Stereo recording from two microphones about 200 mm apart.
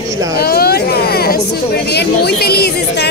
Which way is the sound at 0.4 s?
50° left (ahead or behind).